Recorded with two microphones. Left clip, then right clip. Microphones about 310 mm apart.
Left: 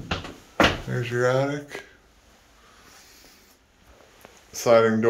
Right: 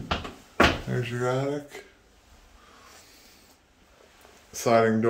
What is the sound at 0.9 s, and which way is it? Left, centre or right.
Cupboard open or close, centre.